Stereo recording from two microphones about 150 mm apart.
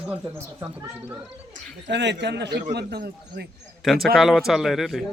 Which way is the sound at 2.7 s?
90° right.